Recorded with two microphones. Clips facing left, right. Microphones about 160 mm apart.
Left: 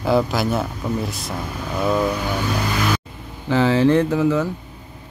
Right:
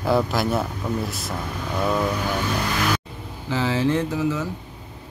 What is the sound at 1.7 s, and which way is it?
Speech, 5° left (ahead or behind).